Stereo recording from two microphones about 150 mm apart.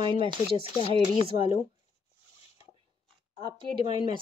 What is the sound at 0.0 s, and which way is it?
Speech, 35° right (ahead or behind).